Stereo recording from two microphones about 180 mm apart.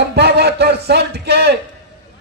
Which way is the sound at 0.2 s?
65° right (ahead or behind).